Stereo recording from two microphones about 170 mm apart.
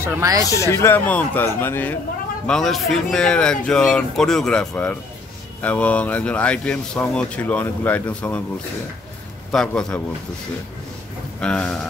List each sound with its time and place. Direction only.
0.0 s speech: 15° right (ahead or behind)
0.5 s speech: 15° left (ahead or behind)
9.5 s speech: 5° left (ahead or behind)
11.4 s speech: 5° left (ahead or behind)